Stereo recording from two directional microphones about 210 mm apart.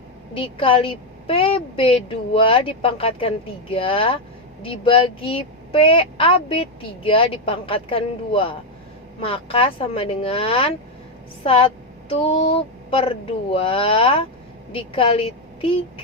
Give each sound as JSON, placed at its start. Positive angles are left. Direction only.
{"t": 0.3, "sound": "a woman's voice", "side_deg": 25}